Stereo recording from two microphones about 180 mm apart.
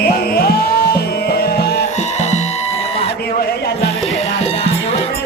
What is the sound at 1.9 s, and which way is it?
Music, 40° left (ahead or behind).